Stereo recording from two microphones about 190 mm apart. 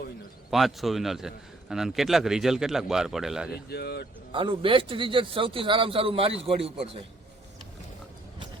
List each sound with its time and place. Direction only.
0.5 s a man's voice: centre (ahead or behind)
3.7 s speech: 60° left (ahead or behind)
4.3 s a man's voice: 25° right (ahead or behind)